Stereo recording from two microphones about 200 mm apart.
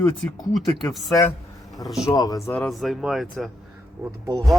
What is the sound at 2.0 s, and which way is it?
Speech, 20° left (ahead or behind).